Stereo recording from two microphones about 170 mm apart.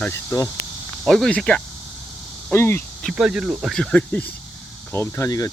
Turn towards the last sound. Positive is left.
turn(degrees=20)  # may be behind; listen again after turning